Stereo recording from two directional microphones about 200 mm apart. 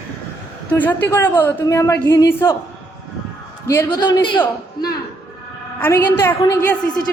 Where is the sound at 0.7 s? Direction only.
10° left (ahead or behind).